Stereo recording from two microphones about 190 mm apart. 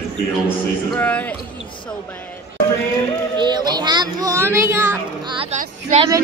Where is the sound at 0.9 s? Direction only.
10° left (ahead or behind).